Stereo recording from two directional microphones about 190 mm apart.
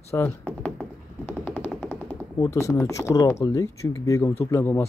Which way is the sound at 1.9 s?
10° left (ahead or behind).